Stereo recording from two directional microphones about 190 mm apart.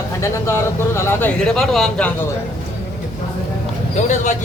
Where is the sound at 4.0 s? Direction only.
40° left (ahead or behind).